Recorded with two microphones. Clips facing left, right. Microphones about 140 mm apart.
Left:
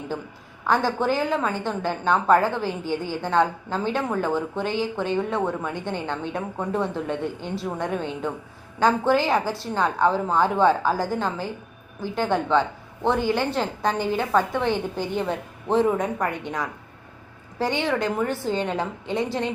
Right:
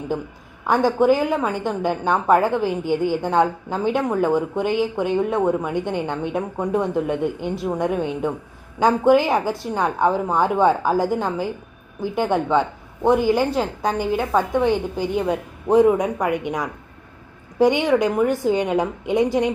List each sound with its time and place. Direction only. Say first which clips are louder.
0.7 s a woman's voice: right 6 dB; 15° right (ahead or behind)